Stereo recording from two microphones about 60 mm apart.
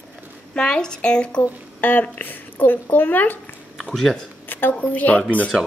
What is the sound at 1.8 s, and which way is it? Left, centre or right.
Speech, left.